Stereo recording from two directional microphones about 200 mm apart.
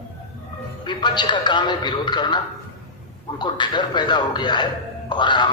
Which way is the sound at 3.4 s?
20° left (ahead or behind).